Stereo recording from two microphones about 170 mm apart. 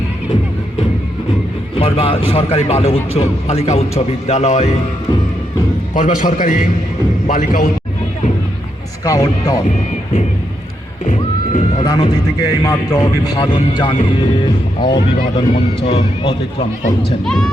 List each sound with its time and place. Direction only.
1.7 s a man's voice: 35° left (ahead or behind)
5.9 s a man's voice: 50° left (ahead or behind)
9.0 s speech: 20° left (ahead or behind)
11.8 s a man's voice: 25° left (ahead or behind)
17.2 s speech: 5° left (ahead or behind)